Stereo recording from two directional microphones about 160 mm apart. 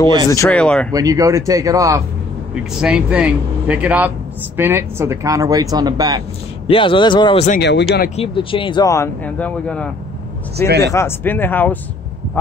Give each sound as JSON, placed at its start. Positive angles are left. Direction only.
{"t": 0.5, "sound": "speech", "side_deg": 5}
{"t": 0.9, "sound": "speech", "side_deg": -20}
{"t": 2.5, "sound": "speech", "side_deg": -5}
{"t": 6.7, "sound": "speech", "side_deg": 30}
{"t": 7.6, "sound": "speech", "side_deg": 90}
{"t": 8.2, "sound": "speech", "side_deg": 35}
{"t": 8.8, "sound": "speech", "side_deg": 15}
{"t": 10.8, "sound": "speech", "side_deg": 20}